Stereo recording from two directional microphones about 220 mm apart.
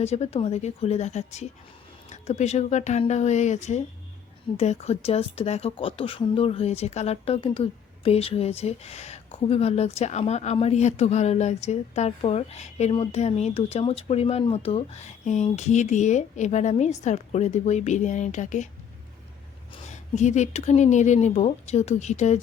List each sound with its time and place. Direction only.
0.0 s speech: 30° left (ahead or behind)
19.9 s speech: 30° left (ahead or behind)